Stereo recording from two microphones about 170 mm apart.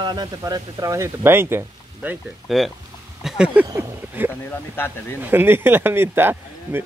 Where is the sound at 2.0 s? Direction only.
Centre (ahead or behind).